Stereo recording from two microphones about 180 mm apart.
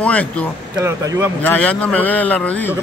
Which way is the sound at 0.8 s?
15° right (ahead or behind).